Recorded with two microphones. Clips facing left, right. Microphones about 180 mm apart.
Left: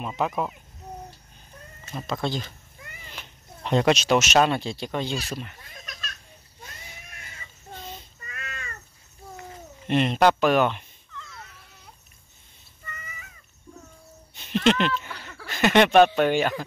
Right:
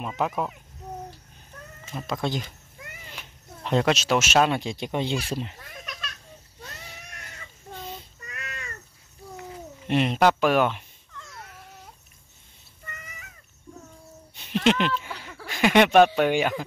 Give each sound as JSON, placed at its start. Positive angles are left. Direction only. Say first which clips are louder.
{"t": 0.0, "sound": "speech", "louder": "even", "side_deg": 0}
{"t": 1.9, "sound": "speech", "louder": "even", "side_deg": -10}
{"t": 3.1, "sound": "speech", "louder": "even", "side_deg": -5}
{"t": 5.6, "sound": "a sound", "louder": "right 4 dB", "side_deg": -60}
{"t": 8.3, "sound": "cat", "louder": "even", "side_deg": -70}
{"t": 9.4, "sound": "speech", "louder": "right 5 dB", "side_deg": -5}
{"t": 14.3, "sound": "a sound", "louder": "left 1 dB", "side_deg": -5}